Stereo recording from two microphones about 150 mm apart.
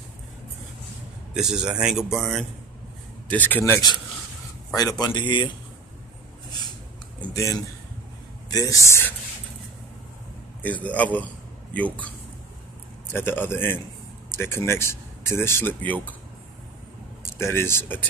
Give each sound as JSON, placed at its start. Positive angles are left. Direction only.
{"t": 1.3, "sound": "speech", "side_deg": -5}
{"t": 3.3, "sound": "speech", "side_deg": 10}
{"t": 4.7, "sound": "speech", "side_deg": 25}
{"t": 7.3, "sound": "speech", "side_deg": 20}
{"t": 10.6, "sound": "speech", "side_deg": 10}
{"t": 13.1, "sound": "speech", "side_deg": 15}
{"t": 17.4, "sound": "speech", "side_deg": 15}